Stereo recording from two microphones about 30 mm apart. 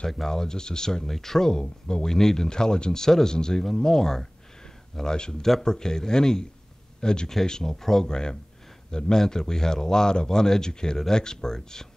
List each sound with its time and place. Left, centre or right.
0.3 s speech: centre
1.0 s speech: centre
1.5 s speech: left
2.0 s speech: centre
8.1 s speech: left